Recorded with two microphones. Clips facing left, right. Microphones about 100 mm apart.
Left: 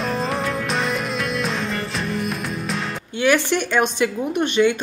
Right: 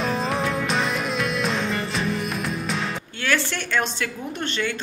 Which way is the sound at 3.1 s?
15° left (ahead or behind).